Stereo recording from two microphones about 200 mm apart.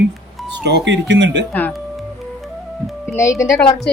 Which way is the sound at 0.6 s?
55° right (ahead or behind).